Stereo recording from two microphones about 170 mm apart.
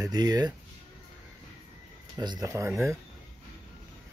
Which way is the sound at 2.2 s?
25° right (ahead or behind).